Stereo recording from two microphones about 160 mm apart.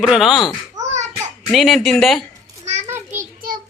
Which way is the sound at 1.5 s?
Centre (ahead or behind).